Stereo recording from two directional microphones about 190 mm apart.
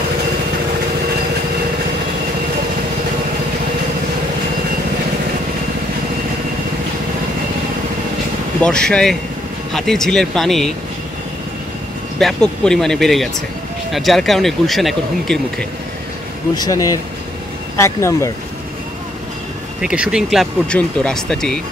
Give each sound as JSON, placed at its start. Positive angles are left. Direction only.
{"t": 8.6, "sound": "speech", "side_deg": 5}
{"t": 12.2, "sound": "speech", "side_deg": 0}
{"t": 16.5, "sound": "speech", "side_deg": 20}
{"t": 19.8, "sound": "speech", "side_deg": -5}